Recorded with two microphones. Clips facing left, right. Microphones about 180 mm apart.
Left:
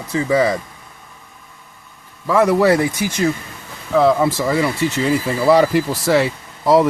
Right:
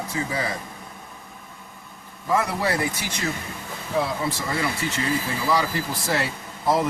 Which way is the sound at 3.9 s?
90° left.